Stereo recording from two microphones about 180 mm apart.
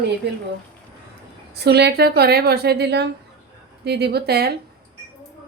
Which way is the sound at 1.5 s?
65° right (ahead or behind).